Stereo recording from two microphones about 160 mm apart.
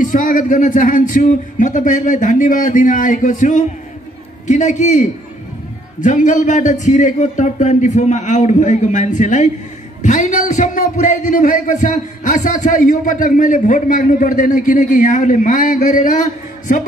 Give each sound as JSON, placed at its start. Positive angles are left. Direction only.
{"t": 0.0, "sound": "a man's voice", "side_deg": 55}